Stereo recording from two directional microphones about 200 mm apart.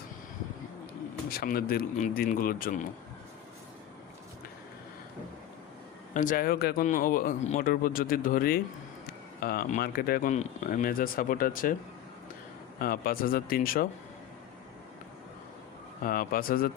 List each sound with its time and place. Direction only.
1.3 s speech: 50° left (ahead or behind)
6.1 s speech: 45° left (ahead or behind)
12.8 s speech: 45° left (ahead or behind)
16.0 s speech: 45° left (ahead or behind)